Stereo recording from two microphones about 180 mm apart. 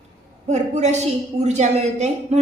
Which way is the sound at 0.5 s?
40° right (ahead or behind).